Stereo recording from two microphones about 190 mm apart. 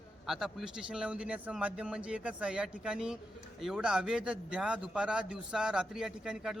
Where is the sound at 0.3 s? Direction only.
Centre (ahead or behind).